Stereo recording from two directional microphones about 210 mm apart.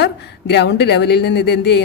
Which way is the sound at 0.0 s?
55° left (ahead or behind).